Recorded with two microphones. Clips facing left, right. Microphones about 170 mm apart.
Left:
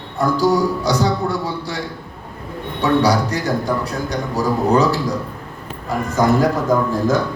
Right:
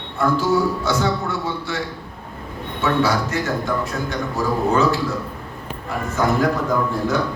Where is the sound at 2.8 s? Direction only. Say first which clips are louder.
Left 4 dB; 40° left (ahead or behind).